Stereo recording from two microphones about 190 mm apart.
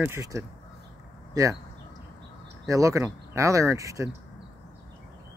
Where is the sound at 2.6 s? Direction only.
15° right (ahead or behind).